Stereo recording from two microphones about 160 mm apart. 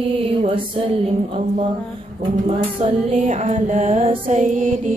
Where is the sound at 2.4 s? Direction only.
40° right (ahead or behind).